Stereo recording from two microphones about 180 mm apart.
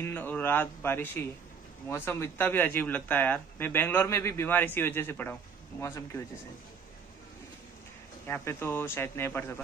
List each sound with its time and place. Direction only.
0.0 s speech: 10° left (ahead or behind)
8.3 s speech: 10° left (ahead or behind)